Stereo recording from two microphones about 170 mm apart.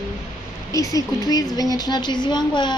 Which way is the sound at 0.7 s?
20° left (ahead or behind).